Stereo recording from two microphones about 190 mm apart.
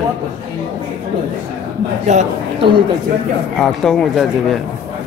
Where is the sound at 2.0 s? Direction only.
35° right (ahead or behind).